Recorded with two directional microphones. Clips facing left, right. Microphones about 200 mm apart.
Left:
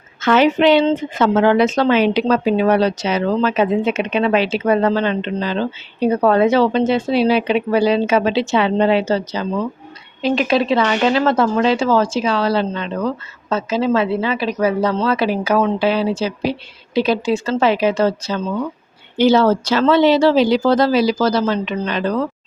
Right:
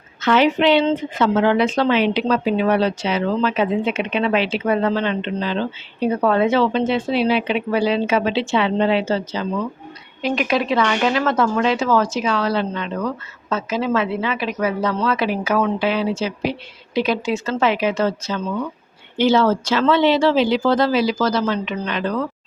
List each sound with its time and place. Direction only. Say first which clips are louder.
0.2 s a woman's voice: left 3 dB; 45° left (ahead or behind)
10.2 s speech: left 4 dB; 30° left (ahead or behind)